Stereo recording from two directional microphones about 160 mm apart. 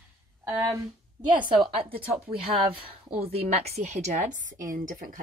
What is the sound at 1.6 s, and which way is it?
Speech, 35° right (ahead or behind).